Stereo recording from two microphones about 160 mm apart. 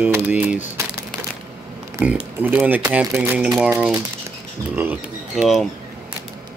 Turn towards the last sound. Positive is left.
turn(degrees=0)  # may be behind; listen again after turning